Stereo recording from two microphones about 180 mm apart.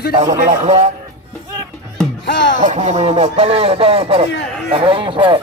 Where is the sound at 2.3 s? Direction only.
90° left.